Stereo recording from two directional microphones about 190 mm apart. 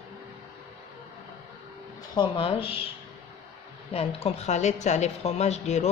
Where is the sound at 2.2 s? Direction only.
30° left (ahead or behind).